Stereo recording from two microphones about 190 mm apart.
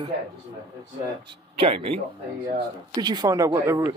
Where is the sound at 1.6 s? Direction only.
30° right (ahead or behind).